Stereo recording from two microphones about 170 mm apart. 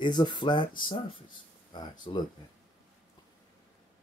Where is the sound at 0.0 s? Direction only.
25° left (ahead or behind).